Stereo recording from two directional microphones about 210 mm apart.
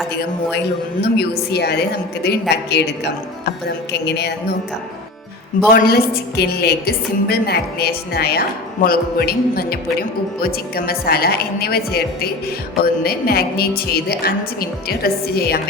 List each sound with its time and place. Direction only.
0.1 s a woman's voice: 50° left (ahead or behind)
5.7 s a woman's voice: 50° left (ahead or behind)